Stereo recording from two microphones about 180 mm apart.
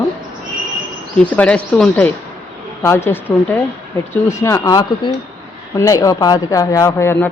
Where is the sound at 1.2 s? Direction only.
10° left (ahead or behind).